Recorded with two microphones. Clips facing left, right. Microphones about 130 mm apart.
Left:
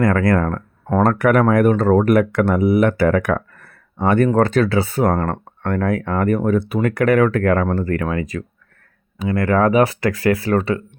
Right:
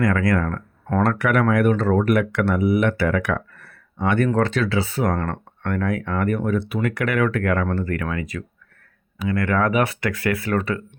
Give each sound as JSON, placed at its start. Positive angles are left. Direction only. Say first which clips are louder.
{"t": 0.0, "sound": "speech", "louder": "left 4 dB", "side_deg": 50}
{"t": 5.0, "sound": "speech", "louder": "left 5 dB", "side_deg": 35}
{"t": 9.1, "sound": "speech", "louder": "left 3 dB", "side_deg": 25}
{"t": 9.4, "sound": "speech", "louder": "left 6 dB", "side_deg": 35}